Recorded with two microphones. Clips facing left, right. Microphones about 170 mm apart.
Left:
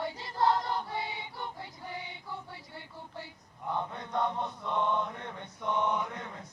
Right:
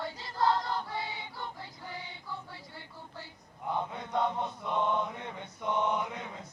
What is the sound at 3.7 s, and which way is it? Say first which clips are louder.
Chant: right 1 dB; 15° right (ahead or behind).